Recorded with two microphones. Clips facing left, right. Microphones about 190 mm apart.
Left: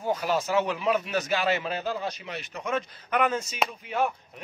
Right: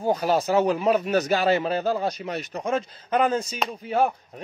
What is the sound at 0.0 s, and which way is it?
Speech, 35° right (ahead or behind).